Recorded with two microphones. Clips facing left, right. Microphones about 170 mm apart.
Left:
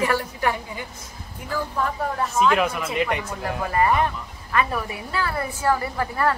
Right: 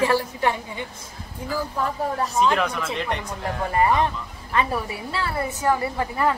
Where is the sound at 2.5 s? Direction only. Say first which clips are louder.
Left 2 dB; 5° left (ahead or behind).